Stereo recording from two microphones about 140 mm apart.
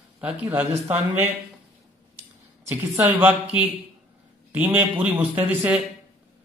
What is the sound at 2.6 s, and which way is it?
A man's voice, 20° right (ahead or behind).